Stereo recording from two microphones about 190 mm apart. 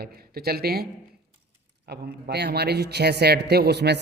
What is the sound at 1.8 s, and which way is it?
A man's voice, 60° right (ahead or behind).